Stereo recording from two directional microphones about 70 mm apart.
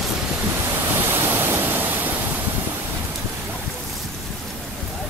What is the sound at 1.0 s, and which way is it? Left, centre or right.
Pink noise, right.